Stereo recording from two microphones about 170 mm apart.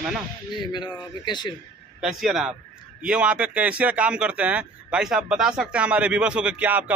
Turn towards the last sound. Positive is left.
turn(degrees=-10)  # may be behind; listen again after turning